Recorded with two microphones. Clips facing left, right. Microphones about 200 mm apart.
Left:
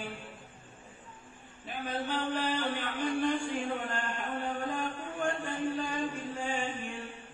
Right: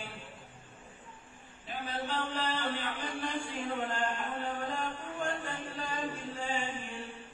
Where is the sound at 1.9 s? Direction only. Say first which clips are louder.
Left 3 dB; 55° left (ahead or behind).